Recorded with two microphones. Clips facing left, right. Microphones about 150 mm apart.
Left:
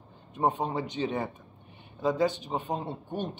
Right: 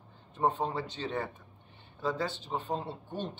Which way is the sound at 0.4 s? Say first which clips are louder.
Left 2 dB; 15° left (ahead or behind).